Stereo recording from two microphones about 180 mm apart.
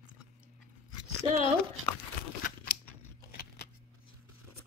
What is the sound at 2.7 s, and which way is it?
Crunch, 55° left (ahead or behind).